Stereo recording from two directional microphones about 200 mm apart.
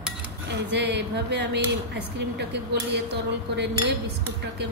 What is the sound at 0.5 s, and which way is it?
Speech, 60° right (ahead or behind).